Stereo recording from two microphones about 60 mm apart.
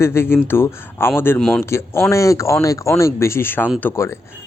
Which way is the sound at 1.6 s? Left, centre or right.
Left.